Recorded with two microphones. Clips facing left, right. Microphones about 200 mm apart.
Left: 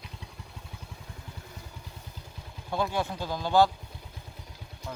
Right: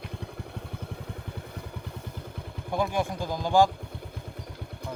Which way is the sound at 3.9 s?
60° right (ahead or behind).